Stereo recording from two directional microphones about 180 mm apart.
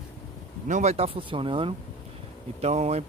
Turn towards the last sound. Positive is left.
turn(degrees=-40)  # may be behind; listen again after turning